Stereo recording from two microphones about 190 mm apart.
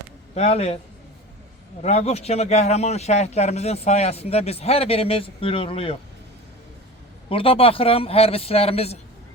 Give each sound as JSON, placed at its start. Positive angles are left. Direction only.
{"t": 0.3, "sound": "a man's voice", "side_deg": 35}
{"t": 1.8, "sound": "a man's voice", "side_deg": 35}
{"t": 7.3, "sound": "a man's voice", "side_deg": 30}